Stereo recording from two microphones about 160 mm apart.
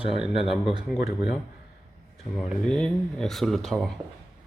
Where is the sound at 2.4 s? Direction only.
5° left (ahead or behind).